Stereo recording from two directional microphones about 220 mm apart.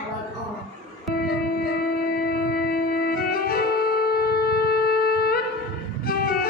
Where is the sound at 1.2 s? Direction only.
45° left (ahead or behind).